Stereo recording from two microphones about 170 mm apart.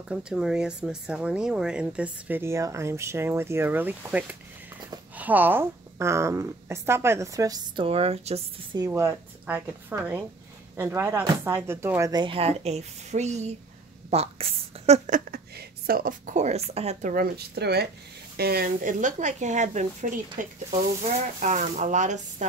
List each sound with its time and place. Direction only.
0.1 s speech: 5° right (ahead or behind); by 8.5 s 35° right (ahead or behind)
8.7 s a woman's voice: 20° right (ahead or behind); by 17.1 s 40° right (ahead or behind)
17.1 s speech: 65° right (ahead or behind); by 22.5 s 45° right (ahead or behind)